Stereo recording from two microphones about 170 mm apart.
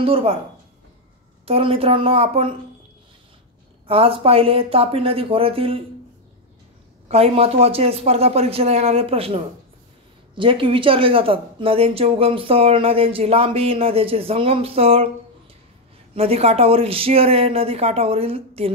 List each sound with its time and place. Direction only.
0.0 s speech: 35° right (ahead or behind)
1.4 s speech: 35° right (ahead or behind)
3.8 s speech: 35° right (ahead or behind)
7.1 s speech: 35° right (ahead or behind)
16.2 s speech: 35° right (ahead or behind)